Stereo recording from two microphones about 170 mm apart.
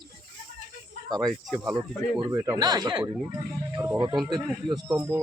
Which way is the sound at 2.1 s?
20° right (ahead or behind).